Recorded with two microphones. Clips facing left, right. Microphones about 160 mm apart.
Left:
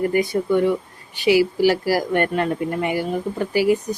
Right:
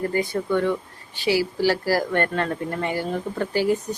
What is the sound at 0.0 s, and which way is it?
Speech, 15° left (ahead or behind).